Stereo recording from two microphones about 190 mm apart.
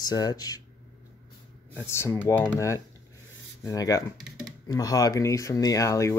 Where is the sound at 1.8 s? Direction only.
15° left (ahead or behind).